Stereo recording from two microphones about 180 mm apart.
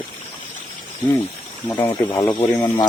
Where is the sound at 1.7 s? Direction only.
10° left (ahead or behind).